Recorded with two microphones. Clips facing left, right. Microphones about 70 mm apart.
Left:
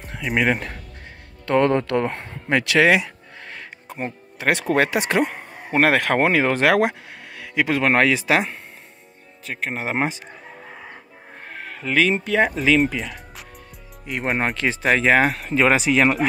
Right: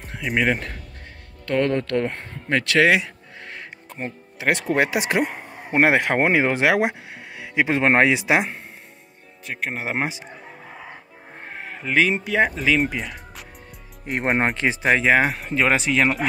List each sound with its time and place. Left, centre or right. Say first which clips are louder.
0.0 s speech: left 1 dB; centre
1.4 s speech: left 3 dB; left
2.0 s music: left 1 dB; centre
3.9 s speech: left 3 dB; centre
5.7 s speech: even; centre
9.4 s speech: left 1 dB; centre
11.5 s speech: even; centre
14.0 s speech: right 2 dB; right
14.5 s speech: right 1 dB; right
14.8 s speech: left 1 dB; centre